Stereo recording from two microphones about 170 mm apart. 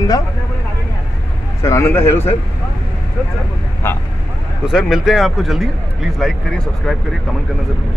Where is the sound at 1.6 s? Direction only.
15° left (ahead or behind).